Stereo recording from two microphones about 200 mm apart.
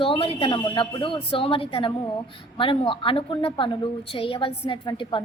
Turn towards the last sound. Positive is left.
turn(degrees=25)  # may be behind; listen again after turning